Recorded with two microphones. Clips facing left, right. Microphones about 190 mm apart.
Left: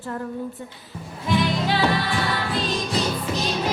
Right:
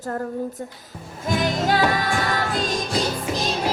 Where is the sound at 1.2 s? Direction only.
45° right (ahead or behind).